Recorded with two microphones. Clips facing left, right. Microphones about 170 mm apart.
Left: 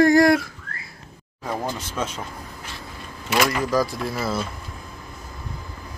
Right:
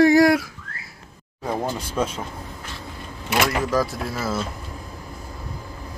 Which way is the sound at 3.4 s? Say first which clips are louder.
Even; centre (ahead or behind).